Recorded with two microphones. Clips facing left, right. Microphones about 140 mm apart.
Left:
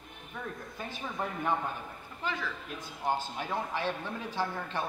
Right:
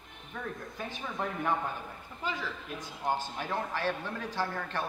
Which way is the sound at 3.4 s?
15° left (ahead or behind).